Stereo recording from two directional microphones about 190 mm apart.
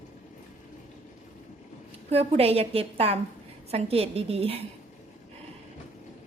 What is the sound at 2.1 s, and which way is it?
A woman's voice, 30° right (ahead or behind).